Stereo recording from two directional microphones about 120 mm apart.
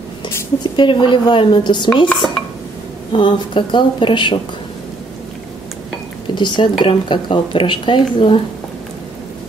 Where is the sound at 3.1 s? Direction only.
45° left (ahead or behind).